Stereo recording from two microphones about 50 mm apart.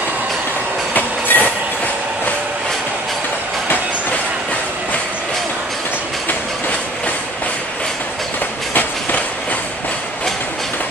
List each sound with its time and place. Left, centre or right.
0.9 s train: left